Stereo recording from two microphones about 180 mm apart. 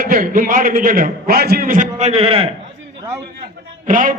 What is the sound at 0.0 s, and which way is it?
A man's voice, 50° right (ahead or behind).